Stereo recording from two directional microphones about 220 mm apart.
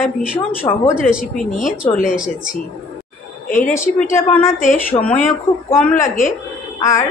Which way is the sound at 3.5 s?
35° left (ahead or behind).